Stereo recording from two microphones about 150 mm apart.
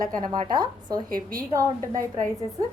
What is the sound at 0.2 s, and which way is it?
A woman's voice, 25° right (ahead or behind).